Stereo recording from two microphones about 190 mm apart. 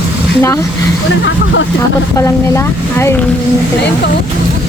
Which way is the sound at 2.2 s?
15° left (ahead or behind).